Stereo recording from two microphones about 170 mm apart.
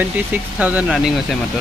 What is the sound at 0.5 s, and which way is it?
Speech, 10° right (ahead or behind).